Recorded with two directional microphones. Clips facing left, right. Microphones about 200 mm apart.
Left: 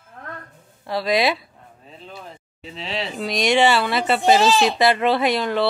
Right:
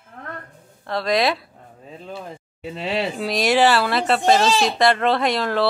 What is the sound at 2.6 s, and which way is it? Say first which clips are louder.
Speech: right 5 dB; 50° right (ahead or behind).